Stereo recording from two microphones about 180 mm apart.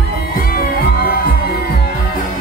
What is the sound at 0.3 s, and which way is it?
Music, 55° left (ahead or behind).